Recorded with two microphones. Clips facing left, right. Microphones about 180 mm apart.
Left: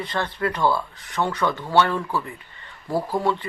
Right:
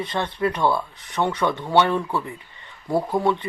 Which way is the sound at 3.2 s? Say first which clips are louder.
Right 2 dB; 10° right (ahead or behind).